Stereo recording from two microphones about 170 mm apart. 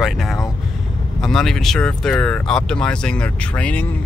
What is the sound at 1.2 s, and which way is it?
Speech, centre (ahead or behind).